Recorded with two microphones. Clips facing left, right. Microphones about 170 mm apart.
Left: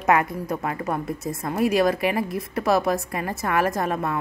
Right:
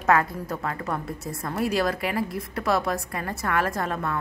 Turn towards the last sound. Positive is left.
turn(degrees=20)  # may be behind; listen again after turning